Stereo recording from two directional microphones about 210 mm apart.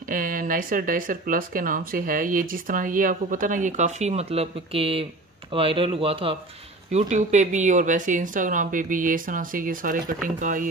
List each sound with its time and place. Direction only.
0.1 s speech: 40° right (ahead or behind)